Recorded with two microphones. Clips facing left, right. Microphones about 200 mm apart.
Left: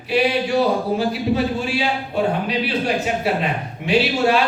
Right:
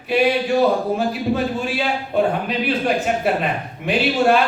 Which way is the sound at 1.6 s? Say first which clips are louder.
Even; 50° right (ahead or behind).